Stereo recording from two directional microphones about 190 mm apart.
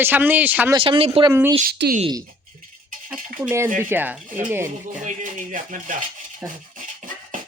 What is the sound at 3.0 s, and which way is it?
Speech, 10° right (ahead or behind).